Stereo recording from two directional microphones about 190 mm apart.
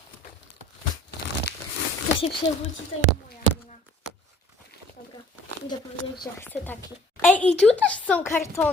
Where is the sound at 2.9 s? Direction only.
90° left.